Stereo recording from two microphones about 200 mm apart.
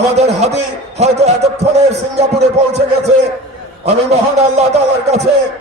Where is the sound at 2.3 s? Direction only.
55° right (ahead or behind).